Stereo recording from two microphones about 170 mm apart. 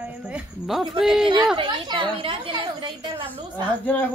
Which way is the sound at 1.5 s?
30° right (ahead or behind).